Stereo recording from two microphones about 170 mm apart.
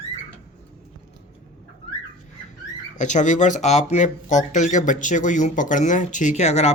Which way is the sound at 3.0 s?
45° left (ahead or behind).